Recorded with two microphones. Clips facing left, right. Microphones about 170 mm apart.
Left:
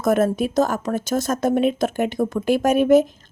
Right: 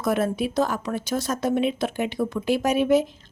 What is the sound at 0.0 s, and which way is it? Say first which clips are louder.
A woman's voice: left 5 dB; 45° left (ahead or behind).